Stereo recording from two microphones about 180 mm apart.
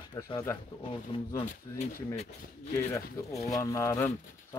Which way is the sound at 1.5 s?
40° left (ahead or behind).